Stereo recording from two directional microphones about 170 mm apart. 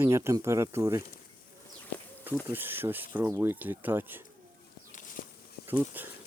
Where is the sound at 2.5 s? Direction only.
10° right (ahead or behind).